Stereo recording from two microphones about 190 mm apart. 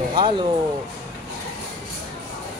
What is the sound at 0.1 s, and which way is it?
Speech, 25° right (ahead or behind).